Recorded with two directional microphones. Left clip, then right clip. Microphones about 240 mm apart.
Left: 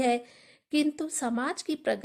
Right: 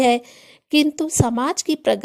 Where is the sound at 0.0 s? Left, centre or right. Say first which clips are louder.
Right 10 dB; right.